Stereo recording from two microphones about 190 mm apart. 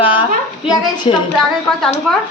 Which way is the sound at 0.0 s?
25° left (ahead or behind).